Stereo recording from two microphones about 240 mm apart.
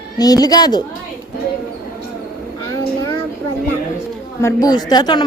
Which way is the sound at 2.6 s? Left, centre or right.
Centre.